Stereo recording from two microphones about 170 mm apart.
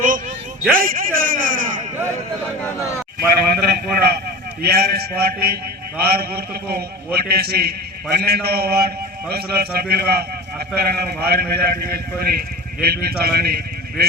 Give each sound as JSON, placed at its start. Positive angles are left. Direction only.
{"t": 0.8, "sound": "a man's voice", "side_deg": -55}
{"t": 3.2, "sound": "a man's voice", "side_deg": -65}